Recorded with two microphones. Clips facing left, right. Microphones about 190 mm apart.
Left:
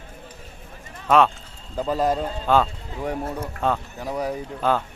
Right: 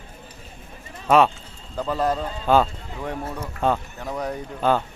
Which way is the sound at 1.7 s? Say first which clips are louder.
Left 1 dB; 10° left (ahead or behind).